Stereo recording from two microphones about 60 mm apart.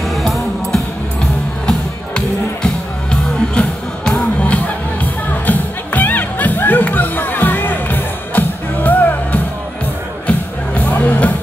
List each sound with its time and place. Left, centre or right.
0.1 s music: centre; by 11.3 s left